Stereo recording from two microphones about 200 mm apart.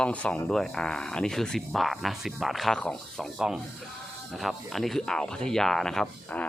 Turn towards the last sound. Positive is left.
turn(degrees=5)  # may be behind; listen again after turning